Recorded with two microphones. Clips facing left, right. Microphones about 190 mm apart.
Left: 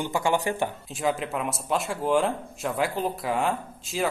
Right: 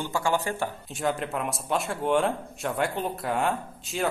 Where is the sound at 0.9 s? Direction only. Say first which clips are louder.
Even; centre (ahead or behind).